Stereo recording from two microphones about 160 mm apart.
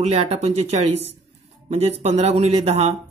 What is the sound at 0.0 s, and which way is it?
Speech, 40° right (ahead or behind).